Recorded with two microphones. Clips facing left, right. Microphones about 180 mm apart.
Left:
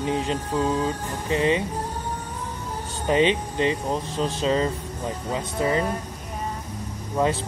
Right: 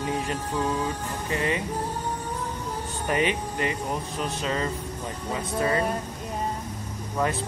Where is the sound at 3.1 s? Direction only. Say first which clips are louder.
Left 5 dB; 25° left (ahead or behind).